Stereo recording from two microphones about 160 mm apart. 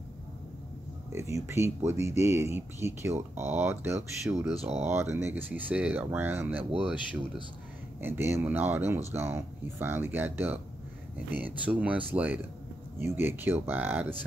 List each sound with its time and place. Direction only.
1.1 s speech: 15° right (ahead or behind)
4.6 s speech: 40° right (ahead or behind)
4.8 s speech: 15° right (ahead or behind)
8.0 s speech: 15° right (ahead or behind)